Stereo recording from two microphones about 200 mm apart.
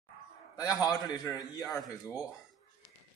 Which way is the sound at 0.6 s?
15° left (ahead or behind).